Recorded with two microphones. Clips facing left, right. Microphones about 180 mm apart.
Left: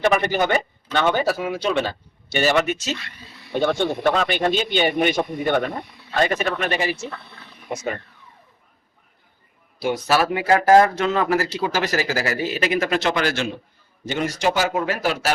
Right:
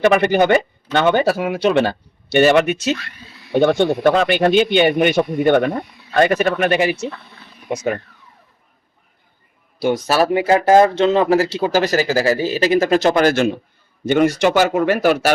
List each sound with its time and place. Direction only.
0.2 s a man's voice: 65° right (ahead or behind)
9.8 s speech: 40° right (ahead or behind)
14.0 s a man's voice: 60° right (ahead or behind)